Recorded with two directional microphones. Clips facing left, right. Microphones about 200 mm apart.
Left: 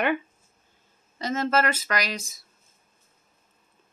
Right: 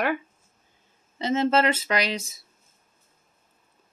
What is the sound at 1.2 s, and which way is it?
Speech, 25° right (ahead or behind).